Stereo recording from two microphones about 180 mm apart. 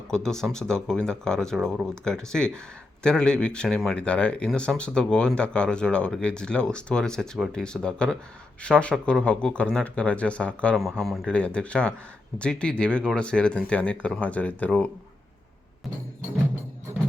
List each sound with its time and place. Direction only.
0.1 s speech: 5° left (ahead or behind)